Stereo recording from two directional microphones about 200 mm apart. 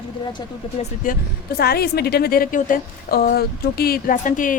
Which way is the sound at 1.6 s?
50° left (ahead or behind).